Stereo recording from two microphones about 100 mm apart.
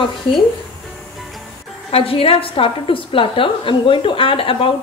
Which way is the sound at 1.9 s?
75° left (ahead or behind).